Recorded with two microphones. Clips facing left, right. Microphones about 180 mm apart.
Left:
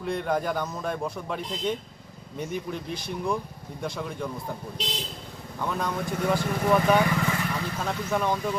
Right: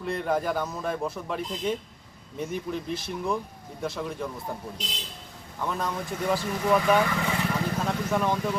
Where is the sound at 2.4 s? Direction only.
Centre (ahead or behind).